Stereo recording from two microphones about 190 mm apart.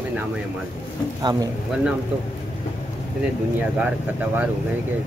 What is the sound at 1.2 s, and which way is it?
Speech, 20° right (ahead or behind).